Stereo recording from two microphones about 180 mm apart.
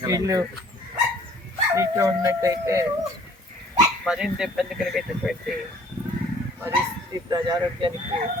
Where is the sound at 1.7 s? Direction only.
15° right (ahead or behind).